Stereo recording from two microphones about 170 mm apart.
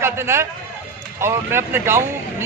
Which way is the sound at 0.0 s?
15° right (ahead or behind).